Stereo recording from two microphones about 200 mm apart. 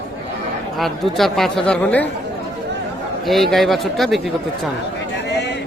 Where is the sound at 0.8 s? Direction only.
Centre (ahead or behind).